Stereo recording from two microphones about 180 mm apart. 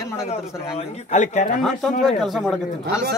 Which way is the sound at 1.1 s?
45° left (ahead or behind).